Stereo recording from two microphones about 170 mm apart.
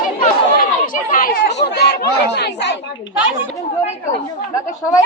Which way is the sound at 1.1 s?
50° left (ahead or behind).